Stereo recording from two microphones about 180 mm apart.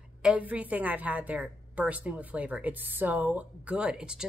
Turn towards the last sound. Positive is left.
turn(degrees=-5)  # may be behind; listen again after turning